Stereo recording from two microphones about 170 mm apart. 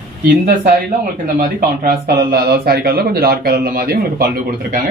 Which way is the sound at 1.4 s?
55° right (ahead or behind).